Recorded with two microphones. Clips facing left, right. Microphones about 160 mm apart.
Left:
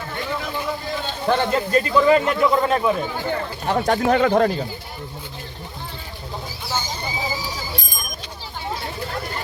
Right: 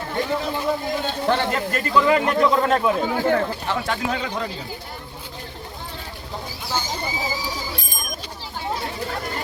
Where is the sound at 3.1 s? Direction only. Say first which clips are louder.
Right 5 dB; 90° right.